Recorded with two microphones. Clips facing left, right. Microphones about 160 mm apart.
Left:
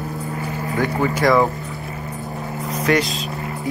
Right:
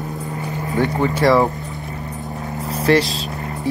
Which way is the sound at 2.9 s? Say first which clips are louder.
Right 3 dB; 30° right (ahead or behind).